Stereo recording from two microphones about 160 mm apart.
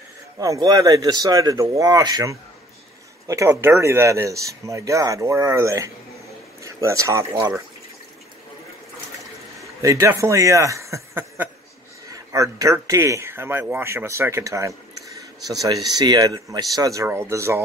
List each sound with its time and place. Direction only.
0.4 s speech: 20° right (ahead or behind)
9.6 s speech: 20° right (ahead or behind)
15.0 s a sound: 20° right (ahead or behind)
15.9 s speech: 25° right (ahead or behind)